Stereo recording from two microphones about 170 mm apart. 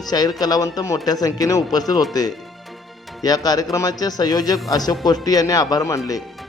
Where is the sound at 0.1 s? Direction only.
20° left (ahead or behind).